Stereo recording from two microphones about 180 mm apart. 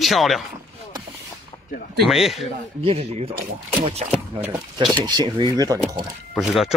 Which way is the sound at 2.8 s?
35° right (ahead or behind).